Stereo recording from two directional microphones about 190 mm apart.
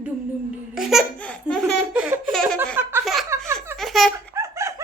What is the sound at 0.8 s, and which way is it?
Laughter, centre (ahead or behind).